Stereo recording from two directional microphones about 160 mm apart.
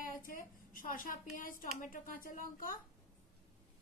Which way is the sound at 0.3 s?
60° left (ahead or behind).